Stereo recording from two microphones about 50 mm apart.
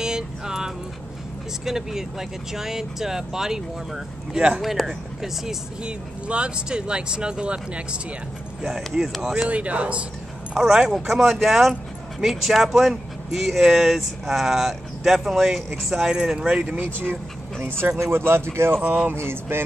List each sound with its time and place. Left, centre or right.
0.0 s music: centre
1.6 s speech: centre
5.9 s speech: right
8.7 s speech: centre
9.5 s speech: right
10.5 s speech: centre
16.1 s speech: centre
16.6 s speech: right
17.6 s a sound: right
17.9 s speech: right
19.1 s a sound: right